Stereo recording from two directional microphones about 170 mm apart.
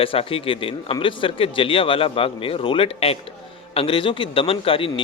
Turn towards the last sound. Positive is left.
turn(degrees=30)  # may be behind; listen again after turning